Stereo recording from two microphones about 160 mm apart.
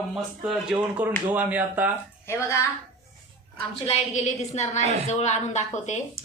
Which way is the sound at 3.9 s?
45° left (ahead or behind).